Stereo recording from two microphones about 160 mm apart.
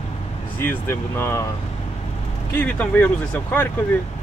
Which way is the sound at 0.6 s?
15° left (ahead or behind).